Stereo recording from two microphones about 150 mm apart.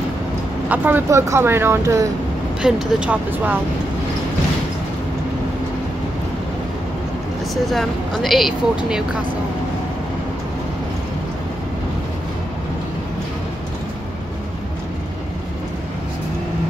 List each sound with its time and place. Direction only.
0.7 s speech: 15° right (ahead or behind)
2.6 s speech: 5° right (ahead or behind)
7.7 s speech: centre (ahead or behind)